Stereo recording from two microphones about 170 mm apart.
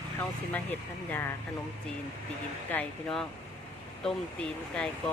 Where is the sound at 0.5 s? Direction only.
10° left (ahead or behind).